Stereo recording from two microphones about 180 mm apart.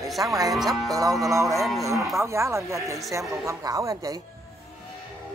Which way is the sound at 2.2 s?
15° right (ahead or behind).